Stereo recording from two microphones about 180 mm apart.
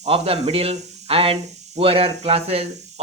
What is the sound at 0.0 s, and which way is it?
Speech, 35° right (ahead or behind).